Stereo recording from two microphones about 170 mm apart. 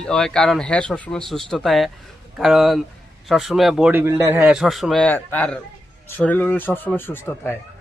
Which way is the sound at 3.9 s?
10° right (ahead or behind).